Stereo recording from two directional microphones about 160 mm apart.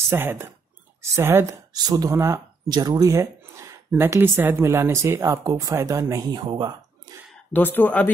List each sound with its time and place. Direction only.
0.1 s speech: 15° right (ahead or behind); by 6.7 s 30° right (ahead or behind)
7.5 s speech: 10° left (ahead or behind)